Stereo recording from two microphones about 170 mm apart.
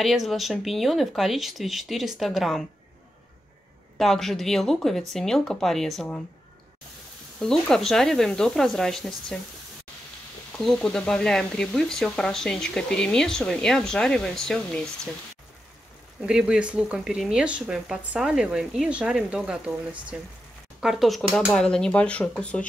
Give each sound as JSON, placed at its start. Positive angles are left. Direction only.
{"t": 0.0, "sound": "speech", "side_deg": 0}
{"t": 4.0, "sound": "speech", "side_deg": 0}
{"t": 7.3, "sound": "speech", "side_deg": 5}
{"t": 10.6, "sound": "speech", "side_deg": 5}
{"t": 16.2, "sound": "speech", "side_deg": -5}